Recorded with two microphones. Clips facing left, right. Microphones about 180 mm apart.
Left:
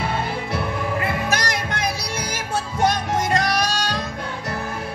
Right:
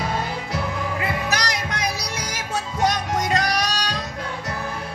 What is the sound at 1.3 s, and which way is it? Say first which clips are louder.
Music: left 2 dB; 55° left (ahead or behind).